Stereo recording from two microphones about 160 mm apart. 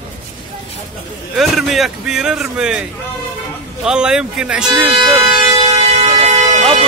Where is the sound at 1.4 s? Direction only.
Centre (ahead or behind).